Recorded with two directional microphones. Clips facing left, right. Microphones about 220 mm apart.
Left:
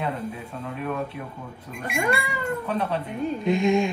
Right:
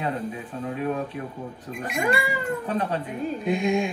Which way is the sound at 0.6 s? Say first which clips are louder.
Right 3 dB; 40° right (ahead or behind).